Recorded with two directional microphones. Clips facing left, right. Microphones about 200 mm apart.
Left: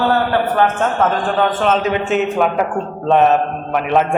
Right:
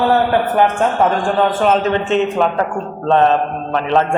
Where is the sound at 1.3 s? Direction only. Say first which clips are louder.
Right 1 dB; 5° right (ahead or behind).